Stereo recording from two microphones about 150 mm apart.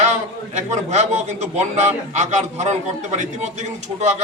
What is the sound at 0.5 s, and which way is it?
A man's voice, 50° right (ahead or behind).